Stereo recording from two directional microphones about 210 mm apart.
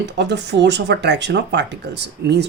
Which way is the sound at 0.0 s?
55° right (ahead or behind).